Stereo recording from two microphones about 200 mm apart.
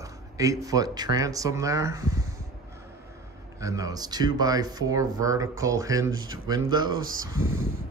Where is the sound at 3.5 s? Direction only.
15° right (ahead or behind).